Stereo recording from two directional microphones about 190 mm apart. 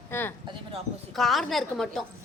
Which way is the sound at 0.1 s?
10° left (ahead or behind).